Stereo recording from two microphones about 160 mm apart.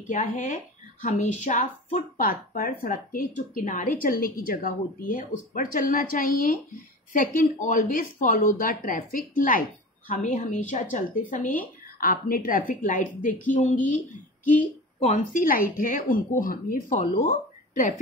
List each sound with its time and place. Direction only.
0.1 s speech: 50° left (ahead or behind)
11.4 s a woman's voice: 10° left (ahead or behind)
12.0 s speech: 65° left (ahead or behind)